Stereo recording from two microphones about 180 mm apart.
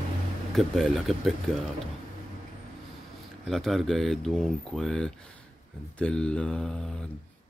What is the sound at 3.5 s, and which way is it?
Speech, centre (ahead or behind).